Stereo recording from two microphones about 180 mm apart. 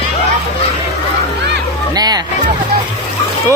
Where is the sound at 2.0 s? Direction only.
20° right (ahead or behind).